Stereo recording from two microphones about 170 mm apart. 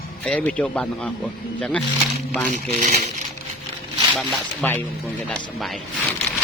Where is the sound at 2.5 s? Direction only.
45° right (ahead or behind).